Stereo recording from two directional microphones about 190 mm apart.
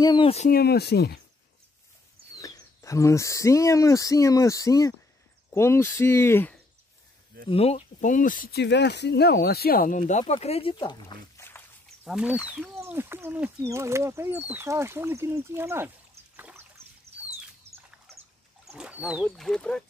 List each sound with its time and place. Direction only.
0.0 s speech: 25° left (ahead or behind)
0.5 s speech: 55° left (ahead or behind)
2.3 s speech: 20° left (ahead or behind)
7.4 s speech: 30° left (ahead or behind)
12.0 s speech: 5° right (ahead or behind)
16.3 s trickle: 10° right (ahead or behind)
18.7 s speech: 5° right (ahead or behind)